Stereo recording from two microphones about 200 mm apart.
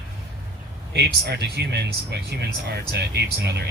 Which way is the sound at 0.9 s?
55° right (ahead or behind).